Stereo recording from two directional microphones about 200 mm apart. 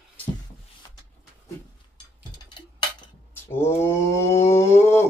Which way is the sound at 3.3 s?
10° left (ahead or behind).